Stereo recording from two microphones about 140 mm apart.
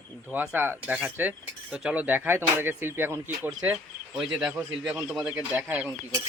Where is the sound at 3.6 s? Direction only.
5° right (ahead or behind).